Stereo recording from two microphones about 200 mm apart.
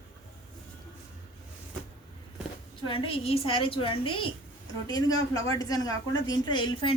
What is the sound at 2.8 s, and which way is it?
A woman's voice, 25° left (ahead or behind).